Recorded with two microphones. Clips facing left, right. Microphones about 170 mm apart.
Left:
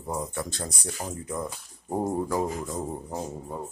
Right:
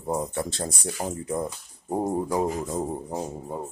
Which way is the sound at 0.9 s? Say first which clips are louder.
Right 5 dB; 15° right (ahead or behind).